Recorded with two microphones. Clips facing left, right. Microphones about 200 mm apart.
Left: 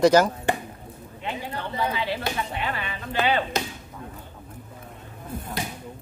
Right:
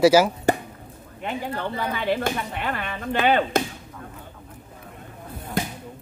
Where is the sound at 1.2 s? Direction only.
55° right (ahead or behind).